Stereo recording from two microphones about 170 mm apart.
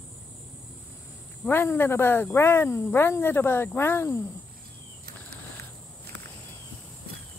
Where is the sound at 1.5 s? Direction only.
10° left (ahead or behind).